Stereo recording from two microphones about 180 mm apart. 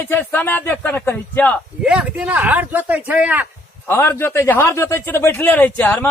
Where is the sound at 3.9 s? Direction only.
15° left (ahead or behind).